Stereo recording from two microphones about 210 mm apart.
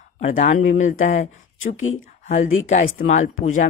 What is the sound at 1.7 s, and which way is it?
Speech, 70° left (ahead or behind).